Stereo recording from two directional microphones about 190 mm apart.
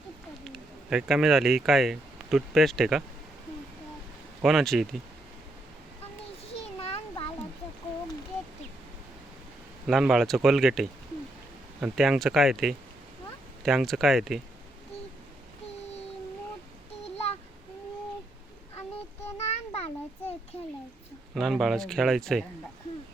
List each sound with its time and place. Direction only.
0.4 s speech: centre (ahead or behind)
4.4 s speech: centre (ahead or behind)
6.5 s a sound: 30° left (ahead or behind)
9.8 s speech: centre (ahead or behind)
19.5 s a sound: 35° left (ahead or behind)
21.3 s speech: centre (ahead or behind)